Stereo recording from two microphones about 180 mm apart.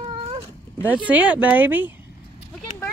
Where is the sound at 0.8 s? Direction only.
10° right (ahead or behind).